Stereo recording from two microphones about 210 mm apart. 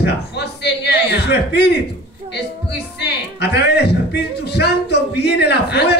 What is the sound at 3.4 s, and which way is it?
A man's voice, 50° left (ahead or behind).